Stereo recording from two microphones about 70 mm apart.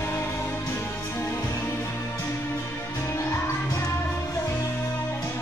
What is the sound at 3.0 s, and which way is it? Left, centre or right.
Music, left.